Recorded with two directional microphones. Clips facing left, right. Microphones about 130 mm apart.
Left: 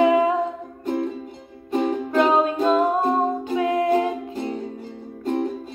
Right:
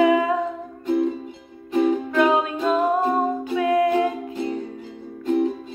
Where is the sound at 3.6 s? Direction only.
25° left (ahead or behind).